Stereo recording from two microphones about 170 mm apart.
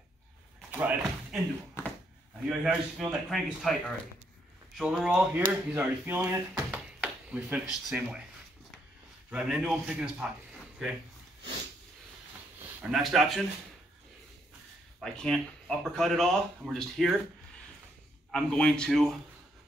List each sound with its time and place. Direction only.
0.7 s speech: 10° right (ahead or behind)
1.8 s a sound: 15° left (ahead or behind)
2.4 s speech: 5° right (ahead or behind)
6.5 s a sound: 5° right (ahead or behind)
9.3 s a man's voice: 5° right (ahead or behind)
12.9 s speech: centre (ahead or behind)
15.0 s speech: centre (ahead or behind)
18.3 s speech: 5° left (ahead or behind)